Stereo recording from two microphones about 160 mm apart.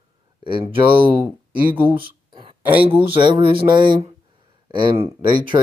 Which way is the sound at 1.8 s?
30° right (ahead or behind).